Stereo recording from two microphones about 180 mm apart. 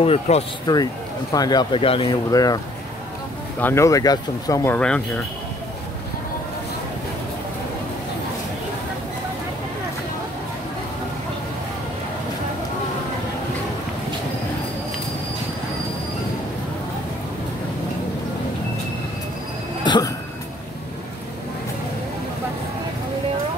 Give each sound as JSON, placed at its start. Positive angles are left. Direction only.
{"t": 0.0, "sound": "speech", "side_deg": 30}
{"t": 1.3, "sound": "speech", "side_deg": 20}
{"t": 2.3, "sound": "speech", "side_deg": 20}
{"t": 4.7, "sound": "speech", "side_deg": 5}
{"t": 19.8, "sound": "a sound", "side_deg": 25}